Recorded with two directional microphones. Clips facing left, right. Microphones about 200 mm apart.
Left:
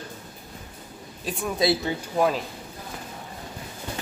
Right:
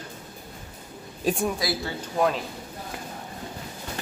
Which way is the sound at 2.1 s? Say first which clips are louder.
Left 1 dB; 5° left (ahead or behind).